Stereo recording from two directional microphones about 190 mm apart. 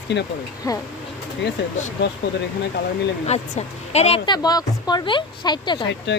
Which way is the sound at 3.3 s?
35° left (ahead or behind).